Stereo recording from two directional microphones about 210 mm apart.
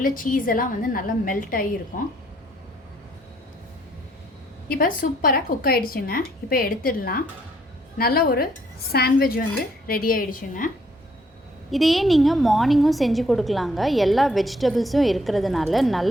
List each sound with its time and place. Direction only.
0.0 s a woman's voice: 40° left (ahead or behind)
4.7 s a woman's voice: 40° left (ahead or behind)
11.7 s a woman's voice: centre (ahead or behind)